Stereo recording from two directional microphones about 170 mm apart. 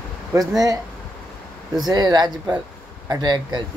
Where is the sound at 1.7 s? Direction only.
25° right (ahead or behind).